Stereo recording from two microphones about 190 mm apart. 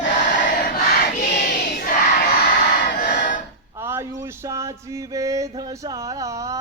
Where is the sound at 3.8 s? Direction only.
15° right (ahead or behind).